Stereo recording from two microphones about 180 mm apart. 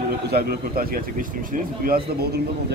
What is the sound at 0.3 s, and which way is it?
Speech, 60° right (ahead or behind).